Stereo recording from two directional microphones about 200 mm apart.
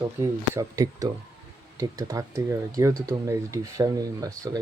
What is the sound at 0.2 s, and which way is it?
Speech, 15° right (ahead or behind).